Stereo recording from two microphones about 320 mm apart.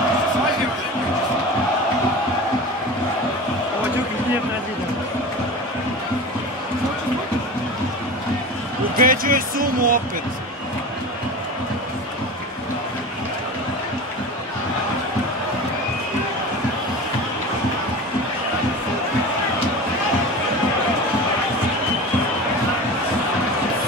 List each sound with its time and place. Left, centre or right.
8.9 s speech: right